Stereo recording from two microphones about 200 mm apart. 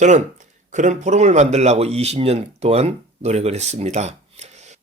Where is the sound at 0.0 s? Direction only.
35° right (ahead or behind).